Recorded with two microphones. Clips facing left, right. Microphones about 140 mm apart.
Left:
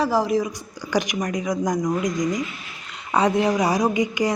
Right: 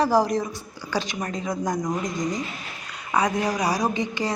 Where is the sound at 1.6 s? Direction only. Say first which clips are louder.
Left 3 dB; 5° right (ahead or behind).